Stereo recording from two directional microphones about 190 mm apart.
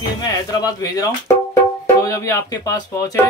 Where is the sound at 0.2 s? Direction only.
20° left (ahead or behind).